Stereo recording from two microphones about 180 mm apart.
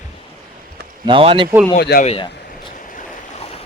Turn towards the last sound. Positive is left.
turn(degrees=35)  # may be behind; listen again after turning